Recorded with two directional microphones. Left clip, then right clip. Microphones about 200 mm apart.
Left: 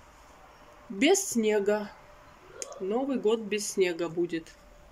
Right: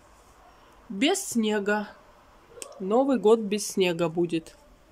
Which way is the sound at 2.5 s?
15° right (ahead or behind).